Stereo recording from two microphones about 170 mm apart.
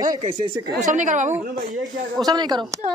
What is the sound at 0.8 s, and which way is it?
Speech, 45° right (ahead or behind).